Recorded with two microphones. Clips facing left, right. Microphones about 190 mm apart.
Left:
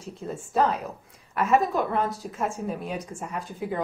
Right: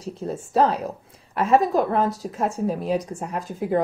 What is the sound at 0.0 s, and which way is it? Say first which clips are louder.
A woman's voice: right 5 dB; 40° right (ahead or behind).